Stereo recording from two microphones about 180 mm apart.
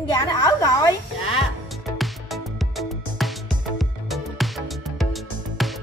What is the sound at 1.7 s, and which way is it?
Music, centre (ahead or behind).